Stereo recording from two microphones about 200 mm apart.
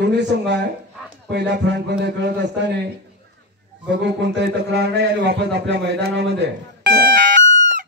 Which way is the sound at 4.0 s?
60° right (ahead or behind).